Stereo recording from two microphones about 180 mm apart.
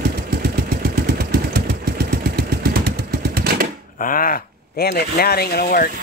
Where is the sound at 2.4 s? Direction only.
60° right (ahead or behind).